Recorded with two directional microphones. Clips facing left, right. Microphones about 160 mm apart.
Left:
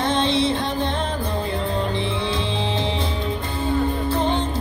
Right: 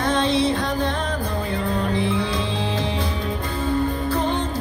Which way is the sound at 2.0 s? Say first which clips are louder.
Right 2 dB; 25° left (ahead or behind).